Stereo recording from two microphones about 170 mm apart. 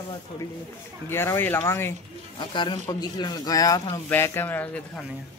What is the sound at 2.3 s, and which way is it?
Speech, 25° left (ahead or behind).